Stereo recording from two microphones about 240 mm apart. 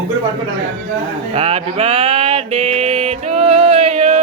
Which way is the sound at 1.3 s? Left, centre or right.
Right.